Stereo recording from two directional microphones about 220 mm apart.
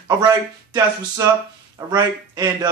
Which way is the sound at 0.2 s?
15° right (ahead or behind).